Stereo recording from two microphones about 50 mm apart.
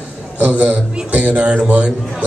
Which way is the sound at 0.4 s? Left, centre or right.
Right.